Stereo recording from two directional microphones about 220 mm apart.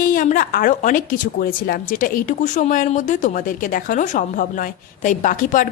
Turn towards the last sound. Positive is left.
turn(degrees=35)  # may be behind; listen again after turning